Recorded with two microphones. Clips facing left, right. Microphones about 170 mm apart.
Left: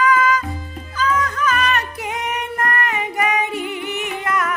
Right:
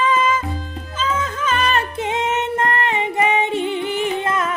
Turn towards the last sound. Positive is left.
turn(degrees=-25)  # may be behind; listen again after turning